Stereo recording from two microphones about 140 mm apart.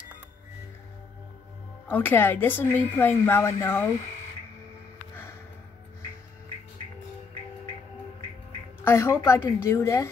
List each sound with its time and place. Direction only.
1.9 s a woman's voice: 15° left (ahead or behind)
8.8 s a woman's voice: 20° left (ahead or behind)